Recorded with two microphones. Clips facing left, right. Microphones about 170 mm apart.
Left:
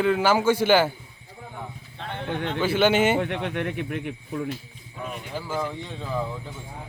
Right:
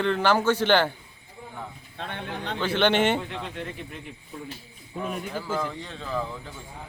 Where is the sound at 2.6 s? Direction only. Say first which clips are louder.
Left 2 dB; 10° left (ahead or behind).